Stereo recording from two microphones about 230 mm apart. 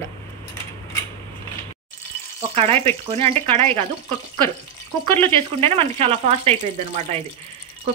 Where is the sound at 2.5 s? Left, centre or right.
Right.